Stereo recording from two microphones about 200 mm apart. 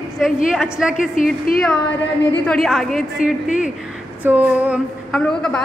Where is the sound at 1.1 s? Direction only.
40° left (ahead or behind).